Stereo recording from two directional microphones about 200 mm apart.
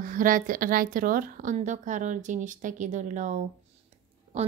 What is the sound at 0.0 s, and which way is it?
A woman's voice, 40° right (ahead or behind).